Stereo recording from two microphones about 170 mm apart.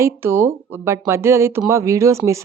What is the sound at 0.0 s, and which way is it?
Speech, 15° right (ahead or behind).